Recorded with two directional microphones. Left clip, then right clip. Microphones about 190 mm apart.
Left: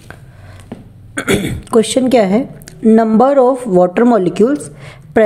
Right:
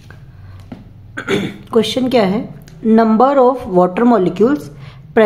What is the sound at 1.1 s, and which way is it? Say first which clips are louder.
A woman's voice: left 3 dB; 25° left (ahead or behind).